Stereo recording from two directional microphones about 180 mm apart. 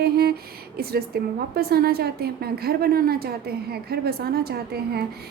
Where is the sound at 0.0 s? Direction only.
60° right (ahead or behind).